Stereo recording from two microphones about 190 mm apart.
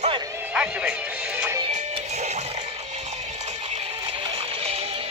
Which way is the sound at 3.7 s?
30° right (ahead or behind).